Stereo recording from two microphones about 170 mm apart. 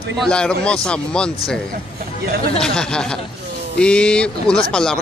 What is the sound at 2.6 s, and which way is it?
Speech, 5° left (ahead or behind).